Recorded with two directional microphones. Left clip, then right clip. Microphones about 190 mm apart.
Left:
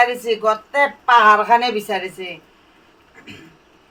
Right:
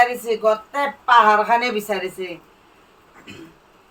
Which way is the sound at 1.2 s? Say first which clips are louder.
Left 4 dB; 45° left (ahead or behind).